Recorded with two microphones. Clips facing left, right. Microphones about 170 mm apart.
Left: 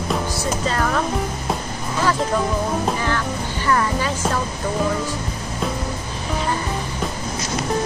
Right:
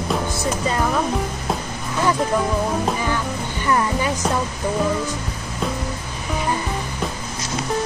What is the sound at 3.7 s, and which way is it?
Music, 15° right (ahead or behind).